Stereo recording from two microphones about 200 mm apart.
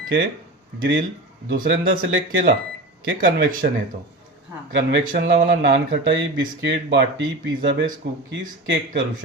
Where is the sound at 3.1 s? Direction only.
45° right (ahead or behind).